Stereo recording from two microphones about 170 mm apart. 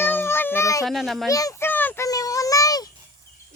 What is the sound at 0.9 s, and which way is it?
Speech, centre (ahead or behind).